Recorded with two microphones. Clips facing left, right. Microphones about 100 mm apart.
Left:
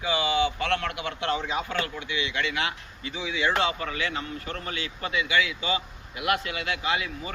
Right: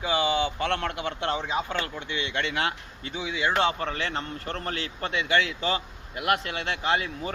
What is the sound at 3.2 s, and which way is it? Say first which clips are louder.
Speech: right 1 dB; 25° right (ahead or behind).